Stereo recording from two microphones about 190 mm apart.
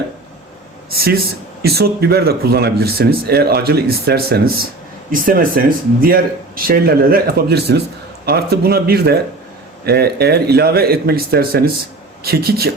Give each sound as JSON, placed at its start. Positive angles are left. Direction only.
{"t": 0.9, "sound": "speech", "side_deg": -55}